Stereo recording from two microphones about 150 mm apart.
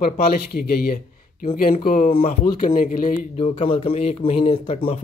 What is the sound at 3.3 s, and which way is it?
Speech, 40° left (ahead or behind).